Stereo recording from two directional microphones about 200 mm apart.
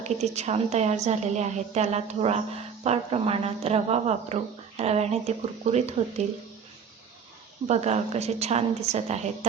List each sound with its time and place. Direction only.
0.0 s a woman's voice: 35° right (ahead or behind)
7.7 s a woman's voice: 35° right (ahead or behind)